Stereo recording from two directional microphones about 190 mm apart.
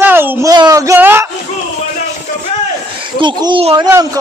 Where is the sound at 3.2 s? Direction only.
25° right (ahead or behind).